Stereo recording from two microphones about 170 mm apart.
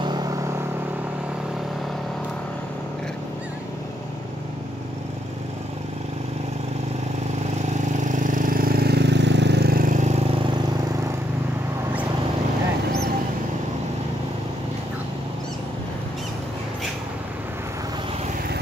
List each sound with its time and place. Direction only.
0.0 s vehicle: 25° right (ahead or behind)
8.0 s vehicle: 50° right (ahead or behind)